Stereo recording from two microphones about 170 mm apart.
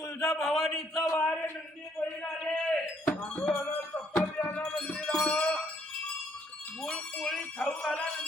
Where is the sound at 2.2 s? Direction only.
5° left (ahead or behind).